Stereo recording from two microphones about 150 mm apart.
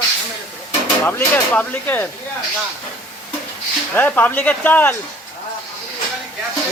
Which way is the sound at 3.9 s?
10° left (ahead or behind).